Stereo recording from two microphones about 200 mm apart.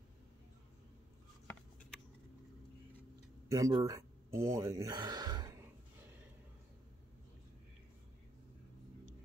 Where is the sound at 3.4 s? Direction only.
15° right (ahead or behind).